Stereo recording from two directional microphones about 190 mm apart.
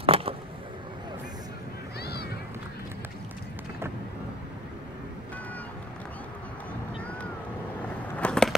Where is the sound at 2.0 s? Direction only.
55° left (ahead or behind).